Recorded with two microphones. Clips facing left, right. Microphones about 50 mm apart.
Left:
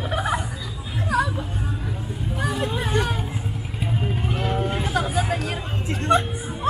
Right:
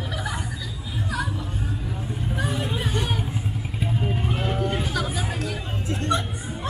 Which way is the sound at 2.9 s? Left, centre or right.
Left.